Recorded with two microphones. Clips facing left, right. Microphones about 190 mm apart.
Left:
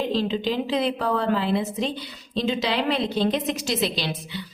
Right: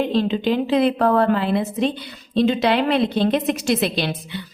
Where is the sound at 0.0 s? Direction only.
55° right (ahead or behind).